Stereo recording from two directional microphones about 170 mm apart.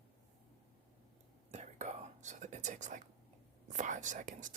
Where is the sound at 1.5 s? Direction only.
45° right (ahead or behind).